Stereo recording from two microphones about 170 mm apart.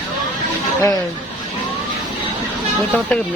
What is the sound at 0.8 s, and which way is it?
Speech, 20° left (ahead or behind).